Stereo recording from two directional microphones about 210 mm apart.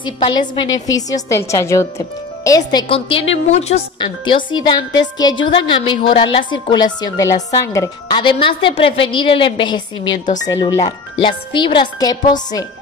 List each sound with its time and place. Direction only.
0.0 s a woman's voice: 25° left (ahead or behind)